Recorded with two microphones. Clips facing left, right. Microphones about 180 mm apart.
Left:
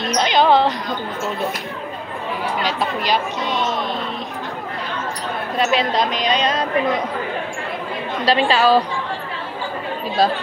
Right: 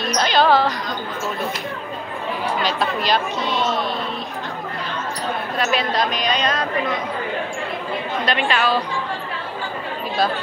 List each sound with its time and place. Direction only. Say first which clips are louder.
0.0 s basketball bounce: left 1 dB; 20° left (ahead or behind)
2.6 s speech: right 1 dB; 10° left (ahead or behind)
5.6 s a woman's voice: left 3 dB; 25° left (ahead or behind)
8.3 s a woman's voice: left 6 dB; 30° left (ahead or behind)